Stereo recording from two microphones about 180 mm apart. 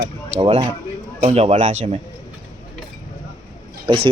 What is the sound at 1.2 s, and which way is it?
Speech, 35° right (ahead or behind).